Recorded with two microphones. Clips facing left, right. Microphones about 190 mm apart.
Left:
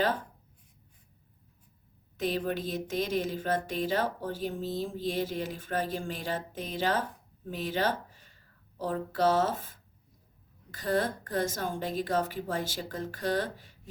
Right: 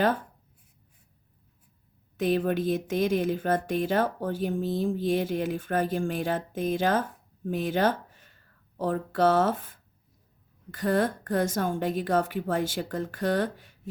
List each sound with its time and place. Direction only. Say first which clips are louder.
2.1 s speech: right 6 dB; 55° right (ahead or behind)